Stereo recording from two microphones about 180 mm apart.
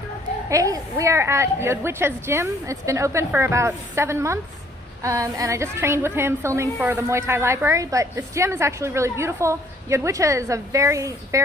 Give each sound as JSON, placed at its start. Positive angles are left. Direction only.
{"t": 0.5, "sound": "a woman's voice", "side_deg": -20}